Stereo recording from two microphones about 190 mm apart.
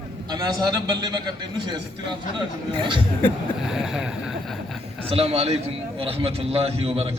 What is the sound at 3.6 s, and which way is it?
Boat, 5° right (ahead or behind).